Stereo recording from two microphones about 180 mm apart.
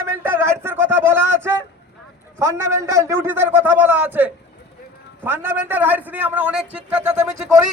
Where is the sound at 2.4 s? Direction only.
15° right (ahead or behind).